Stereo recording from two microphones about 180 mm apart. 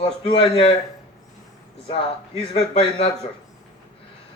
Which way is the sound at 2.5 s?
35° left (ahead or behind).